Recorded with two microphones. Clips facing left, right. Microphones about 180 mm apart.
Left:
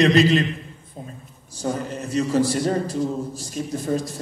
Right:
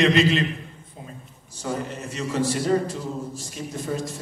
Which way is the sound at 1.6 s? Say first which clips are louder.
Left 3 dB; 35° left (ahead or behind).